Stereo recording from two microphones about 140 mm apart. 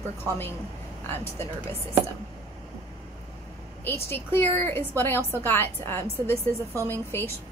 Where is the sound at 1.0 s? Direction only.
15° left (ahead or behind).